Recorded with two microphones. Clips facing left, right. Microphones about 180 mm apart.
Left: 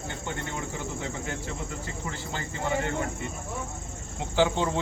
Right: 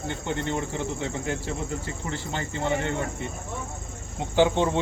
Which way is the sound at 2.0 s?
25° right (ahead or behind).